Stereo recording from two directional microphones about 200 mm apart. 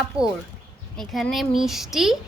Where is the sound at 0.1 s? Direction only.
30° right (ahead or behind).